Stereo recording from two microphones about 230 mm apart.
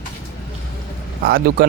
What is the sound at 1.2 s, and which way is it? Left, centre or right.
Speech, right.